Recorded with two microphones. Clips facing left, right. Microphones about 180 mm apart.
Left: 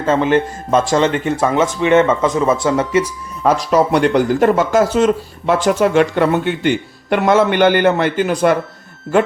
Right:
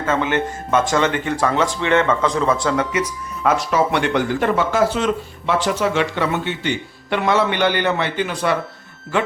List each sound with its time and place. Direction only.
0.0 s speech: 30° left (ahead or behind); by 8.5 s 45° left (ahead or behind)